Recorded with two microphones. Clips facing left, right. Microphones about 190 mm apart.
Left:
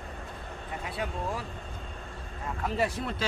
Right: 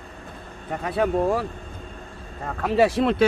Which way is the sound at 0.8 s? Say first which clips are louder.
Right 13 dB; 60° right (ahead or behind).